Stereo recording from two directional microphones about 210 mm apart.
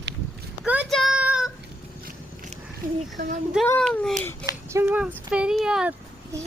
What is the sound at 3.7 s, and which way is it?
Speech, 5° left (ahead or behind).